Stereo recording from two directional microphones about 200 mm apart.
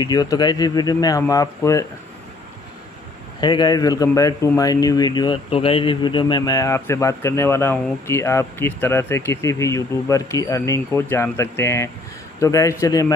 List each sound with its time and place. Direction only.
0.0 s speech: 20° left (ahead or behind)
3.3 s speech: 20° left (ahead or behind)